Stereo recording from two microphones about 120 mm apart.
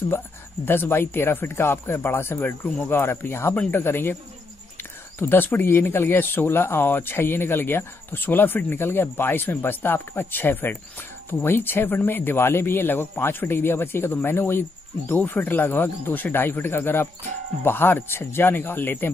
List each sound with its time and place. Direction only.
0.7 s speech: 20° left (ahead or behind)
5.2 s speech: 15° left (ahead or behind)